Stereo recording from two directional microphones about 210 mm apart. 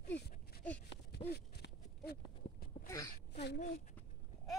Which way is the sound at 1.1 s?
50° left (ahead or behind).